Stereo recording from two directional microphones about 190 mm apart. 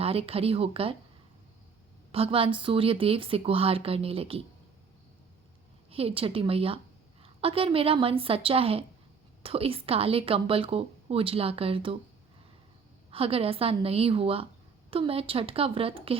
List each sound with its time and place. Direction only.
0.0 s speech: 30° right (ahead or behind)
2.1 s a woman's voice: 30° right (ahead or behind)
5.9 s a woman's voice: 30° right (ahead or behind)
13.1 s a woman's voice: 30° right (ahead or behind)